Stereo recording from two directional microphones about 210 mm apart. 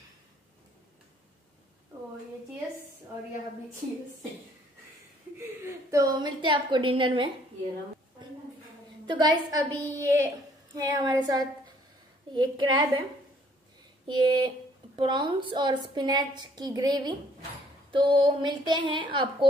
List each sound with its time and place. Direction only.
5.7 s a woman's voice: 15° right (ahead or behind)
9.0 s a woman's voice: 20° right (ahead or behind)
14.0 s a woman's voice: 20° right (ahead or behind)